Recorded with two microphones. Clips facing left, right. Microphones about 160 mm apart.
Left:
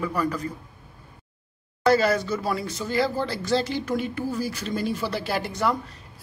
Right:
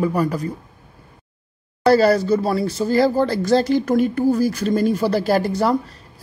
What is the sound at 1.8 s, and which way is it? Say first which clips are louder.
Speech: right 6 dB; 35° right (ahead or behind).